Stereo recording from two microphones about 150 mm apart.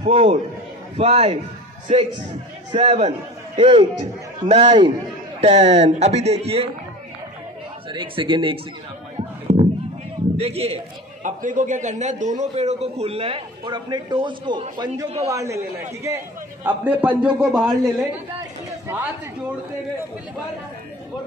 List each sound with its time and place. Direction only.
0.0 s a man's voice: 45° right (ahead or behind)
2.7 s a man's voice: 35° right (ahead or behind)
5.4 s a man's voice: 45° right (ahead or behind)
7.9 s a man's voice: 35° right (ahead or behind)
9.5 s a sound: 45° right (ahead or behind)
10.3 s a man's voice: 45° right (ahead or behind)
11.2 s a man's voice: 60° right (ahead or behind); by 14.6 s 30° right (ahead or behind)
15.1 s a man's voice: 20° right (ahead or behind); by 17.9 s centre (ahead or behind)